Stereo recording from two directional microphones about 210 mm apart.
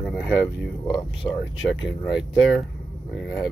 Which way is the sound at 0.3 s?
5° right (ahead or behind).